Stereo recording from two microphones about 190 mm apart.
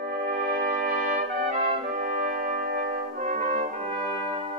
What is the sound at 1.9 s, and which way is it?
Brass instrument, 45° right (ahead or behind).